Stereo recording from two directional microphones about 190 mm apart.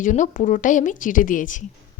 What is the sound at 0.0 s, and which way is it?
A woman's voice, 40° left (ahead or behind).